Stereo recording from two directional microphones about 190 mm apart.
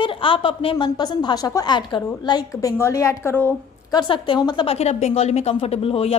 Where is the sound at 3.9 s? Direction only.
25° left (ahead or behind).